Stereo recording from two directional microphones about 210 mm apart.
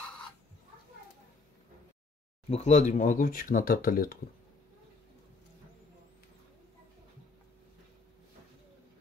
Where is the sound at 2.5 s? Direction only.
30° left (ahead or behind).